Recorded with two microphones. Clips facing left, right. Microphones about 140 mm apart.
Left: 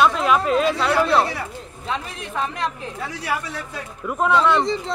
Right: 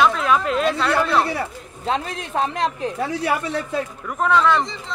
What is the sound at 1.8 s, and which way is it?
Speech, 30° right (ahead or behind).